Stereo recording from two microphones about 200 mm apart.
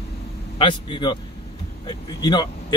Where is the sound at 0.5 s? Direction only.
25° left (ahead or behind).